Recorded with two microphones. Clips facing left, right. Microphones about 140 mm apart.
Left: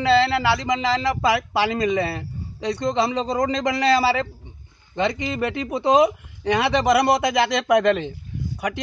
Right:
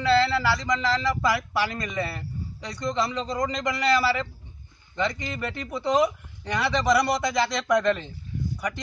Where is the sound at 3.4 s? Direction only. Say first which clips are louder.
Left 5 dB; 90° left.